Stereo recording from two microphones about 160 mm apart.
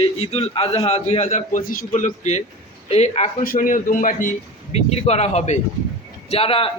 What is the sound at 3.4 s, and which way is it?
Speech, 60° left (ahead or behind).